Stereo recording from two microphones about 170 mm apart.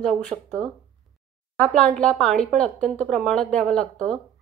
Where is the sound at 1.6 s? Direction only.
5° left (ahead or behind).